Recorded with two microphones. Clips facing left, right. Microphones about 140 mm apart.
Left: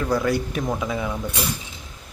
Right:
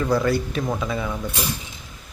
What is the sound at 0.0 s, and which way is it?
Speech, centre (ahead or behind).